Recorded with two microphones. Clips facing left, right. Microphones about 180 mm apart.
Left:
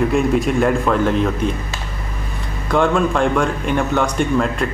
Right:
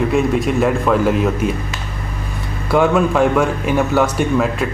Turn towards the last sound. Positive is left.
turn(degrees=-5)  # may be behind; listen again after turning